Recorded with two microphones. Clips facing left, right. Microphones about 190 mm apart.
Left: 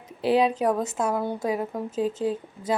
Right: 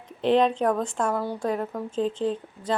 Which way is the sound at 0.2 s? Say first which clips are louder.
Right 1 dB; 5° left (ahead or behind).